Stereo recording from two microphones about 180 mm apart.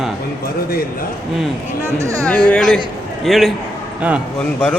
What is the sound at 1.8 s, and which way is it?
Speech, 15° right (ahead or behind).